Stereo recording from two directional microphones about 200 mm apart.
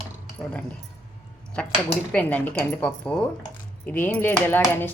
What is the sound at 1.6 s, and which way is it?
A woman's voice, 5° left (ahead or behind).